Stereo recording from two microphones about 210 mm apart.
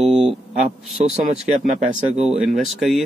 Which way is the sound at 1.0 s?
30° right (ahead or behind).